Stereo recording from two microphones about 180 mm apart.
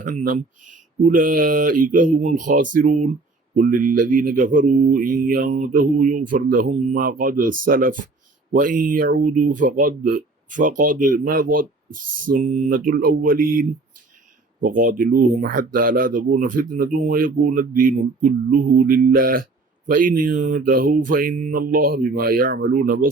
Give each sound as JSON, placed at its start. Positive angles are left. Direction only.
{"t": 0.0, "sound": "speech", "side_deg": -45}